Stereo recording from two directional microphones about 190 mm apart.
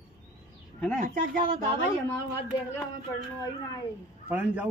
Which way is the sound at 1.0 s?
45° right (ahead or behind).